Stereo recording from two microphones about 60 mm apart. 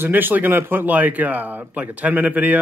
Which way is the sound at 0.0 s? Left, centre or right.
Right.